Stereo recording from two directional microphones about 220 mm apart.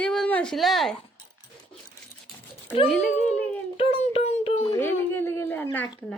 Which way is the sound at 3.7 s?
25° left (ahead or behind).